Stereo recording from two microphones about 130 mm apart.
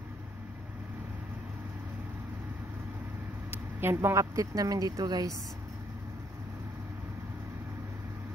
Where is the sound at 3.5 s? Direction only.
15° right (ahead or behind).